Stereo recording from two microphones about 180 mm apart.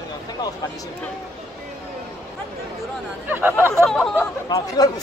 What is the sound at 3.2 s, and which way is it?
Speech, 10° right (ahead or behind).